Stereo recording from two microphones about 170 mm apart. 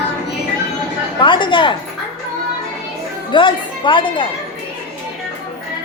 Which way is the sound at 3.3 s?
30° left (ahead or behind).